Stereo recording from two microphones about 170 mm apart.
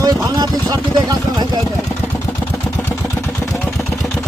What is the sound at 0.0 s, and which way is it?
Speech, 25° right (ahead or behind).